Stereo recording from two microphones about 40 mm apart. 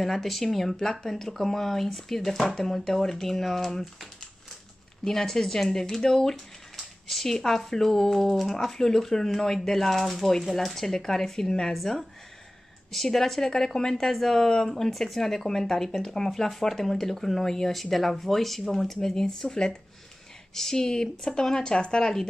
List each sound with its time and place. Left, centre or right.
0.0 s speech: centre
5.0 s speech: centre